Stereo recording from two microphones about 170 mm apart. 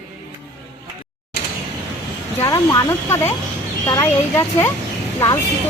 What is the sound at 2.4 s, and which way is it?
Speech, 20° left (ahead or behind).